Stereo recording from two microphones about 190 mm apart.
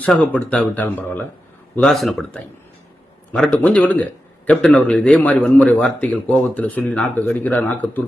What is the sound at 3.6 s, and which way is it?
A man's voice, 5° left (ahead or behind).